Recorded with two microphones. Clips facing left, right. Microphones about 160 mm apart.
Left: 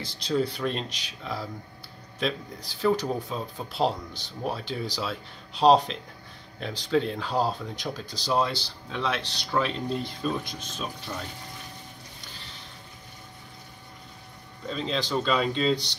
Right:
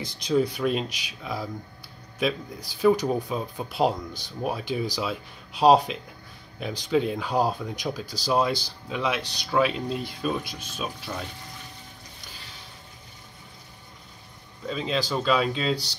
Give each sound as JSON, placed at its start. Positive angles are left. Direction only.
{"t": 0.0, "sound": "speech", "side_deg": -15}
{"t": 14.7, "sound": "speech", "side_deg": -5}